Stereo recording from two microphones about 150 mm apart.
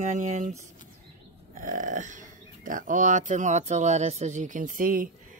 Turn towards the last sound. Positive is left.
turn(degrees=-65)  # may be behind; listen again after turning